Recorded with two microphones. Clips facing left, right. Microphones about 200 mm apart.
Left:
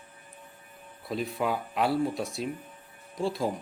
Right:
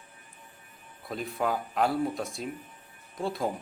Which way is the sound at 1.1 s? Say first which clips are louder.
Left 1 dB; centre (ahead or behind).